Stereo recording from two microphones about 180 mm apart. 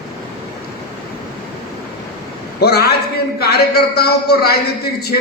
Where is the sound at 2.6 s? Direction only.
60° left (ahead or behind).